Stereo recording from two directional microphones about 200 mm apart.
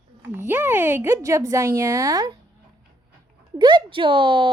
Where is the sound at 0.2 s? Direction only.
10° right (ahead or behind).